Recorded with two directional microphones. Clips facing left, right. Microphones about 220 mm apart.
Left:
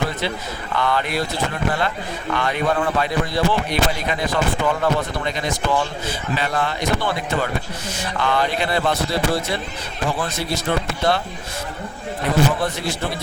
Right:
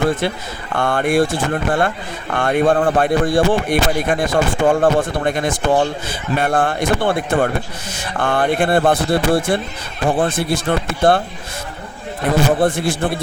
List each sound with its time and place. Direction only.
0.8 s speech: 50° right (ahead or behind)
12.2 s speech: 50° right (ahead or behind)